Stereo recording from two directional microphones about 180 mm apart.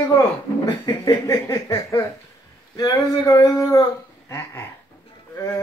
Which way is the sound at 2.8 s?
20° left (ahead or behind).